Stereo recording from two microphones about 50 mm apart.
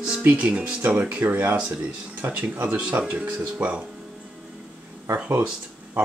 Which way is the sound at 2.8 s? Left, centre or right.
Right.